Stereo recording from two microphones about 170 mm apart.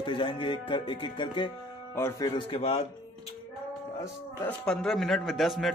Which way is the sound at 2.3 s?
35° left (ahead or behind).